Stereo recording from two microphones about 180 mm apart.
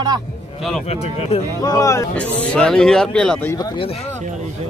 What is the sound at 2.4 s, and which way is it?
Speech, 5° left (ahead or behind).